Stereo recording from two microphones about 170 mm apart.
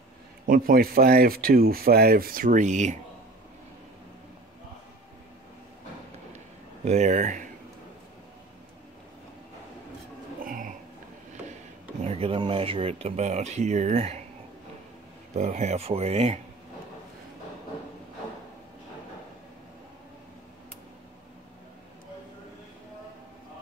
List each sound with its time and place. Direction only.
0.5 s speech: 60° right (ahead or behind)
6.8 s speech: 45° right (ahead or behind)
10.4 s a sound: 55° right (ahead or behind)
12.0 s speech: 35° right (ahead or behind)
15.3 s speech: 45° right (ahead or behind)